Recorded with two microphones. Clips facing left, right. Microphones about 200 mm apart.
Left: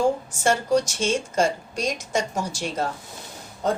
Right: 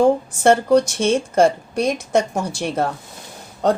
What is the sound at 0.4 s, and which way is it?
A woman's voice, 60° right (ahead or behind).